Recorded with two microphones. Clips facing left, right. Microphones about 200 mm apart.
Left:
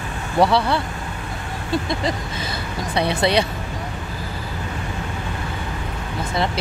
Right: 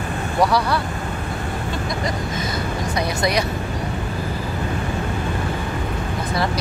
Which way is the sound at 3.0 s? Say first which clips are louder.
Left 4 dB; 30° left (ahead or behind).